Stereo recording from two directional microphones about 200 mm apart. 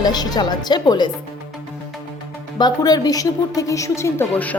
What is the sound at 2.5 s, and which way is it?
A woman's voice, 20° left (ahead or behind).